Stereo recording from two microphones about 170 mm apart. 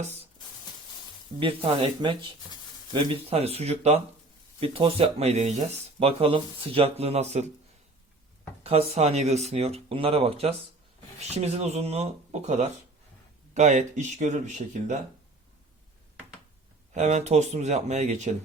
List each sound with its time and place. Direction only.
1.4 s speech: 30° right (ahead or behind)
8.6 s speech: 35° right (ahead or behind)
16.9 s speech: 40° right (ahead or behind)